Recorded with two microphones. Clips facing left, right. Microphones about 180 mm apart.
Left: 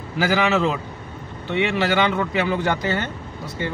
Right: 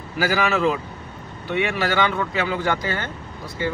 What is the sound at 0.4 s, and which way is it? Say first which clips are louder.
Speech: left 1 dB; 20° left (ahead or behind).